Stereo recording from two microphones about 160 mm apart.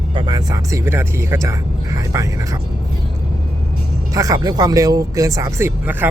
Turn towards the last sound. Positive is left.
turn(degrees=-15)  # may be behind; listen again after turning